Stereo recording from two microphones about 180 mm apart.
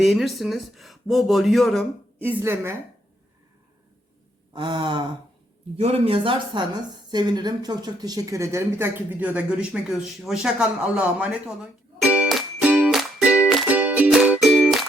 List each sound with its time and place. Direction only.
0.0 s speech: centre (ahead or behind)
2.2 s a woman's voice: 10° right (ahead or behind)
4.5 s a woman's voice: 25° right (ahead or behind); by 9.6 s 5° right (ahead or behind)
10.2 s music: 5° right (ahead or behind)